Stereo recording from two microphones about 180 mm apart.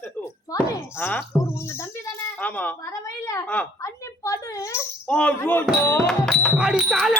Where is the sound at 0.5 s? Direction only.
10° left (ahead or behind).